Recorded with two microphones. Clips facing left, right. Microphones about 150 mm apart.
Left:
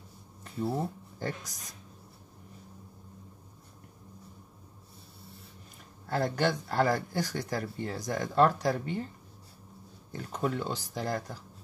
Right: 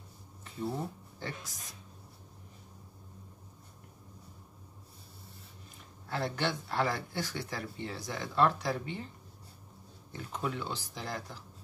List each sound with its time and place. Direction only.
1.2 s speech: 45° left (ahead or behind)
6.0 s speech: 45° left (ahead or behind)
10.1 s speech: 45° left (ahead or behind)